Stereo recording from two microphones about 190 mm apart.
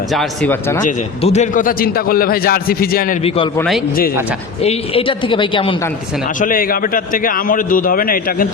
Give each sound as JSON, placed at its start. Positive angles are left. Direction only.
{"t": 0.1, "sound": "speech", "side_deg": 0}
{"t": 0.9, "sound": "a man's voice", "side_deg": 35}
{"t": 3.2, "sound": "a woman's voice", "side_deg": 30}
{"t": 4.6, "sound": "a woman's voice", "side_deg": 30}
{"t": 6.4, "sound": "a man's voice", "side_deg": 50}